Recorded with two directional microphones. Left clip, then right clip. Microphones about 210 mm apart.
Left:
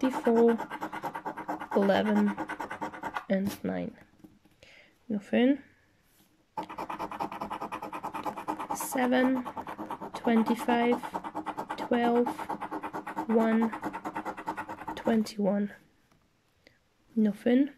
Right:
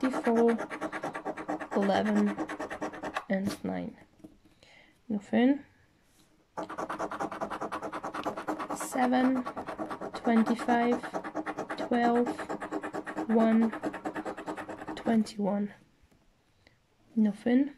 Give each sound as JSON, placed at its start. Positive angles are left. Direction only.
{"t": 0.0, "sound": "scratch", "side_deg": 10}
{"t": 4.6, "sound": "whispering", "side_deg": 10}
{"t": 6.7, "sound": "scratch", "side_deg": 0}
{"t": 8.9, "sound": "speech", "side_deg": 10}
{"t": 9.8, "sound": "scratch", "side_deg": 10}
{"t": 13.1, "sound": "speech", "side_deg": 5}
{"t": 13.9, "sound": "scratch", "side_deg": 25}
{"t": 15.0, "sound": "speech", "side_deg": 10}
{"t": 17.2, "sound": "speech", "side_deg": 10}